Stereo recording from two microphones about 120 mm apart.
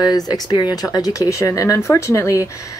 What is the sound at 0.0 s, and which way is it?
Speech, 35° left (ahead or behind).